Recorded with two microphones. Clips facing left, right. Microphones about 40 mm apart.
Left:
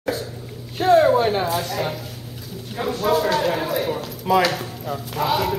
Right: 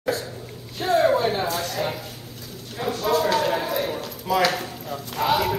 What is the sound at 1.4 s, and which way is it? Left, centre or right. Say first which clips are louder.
Speech: left 2 dB; centre.